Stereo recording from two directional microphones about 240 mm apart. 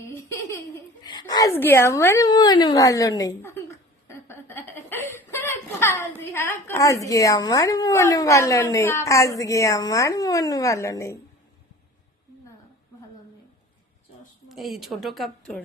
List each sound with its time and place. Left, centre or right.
0.0 s giggle: centre
6.3 s speech: centre
14.5 s speech: centre